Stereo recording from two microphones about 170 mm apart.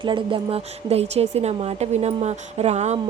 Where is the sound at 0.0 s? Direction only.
30° right (ahead or behind).